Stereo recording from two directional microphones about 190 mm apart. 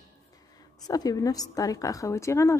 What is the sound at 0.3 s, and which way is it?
A woman's voice, 20° left (ahead or behind).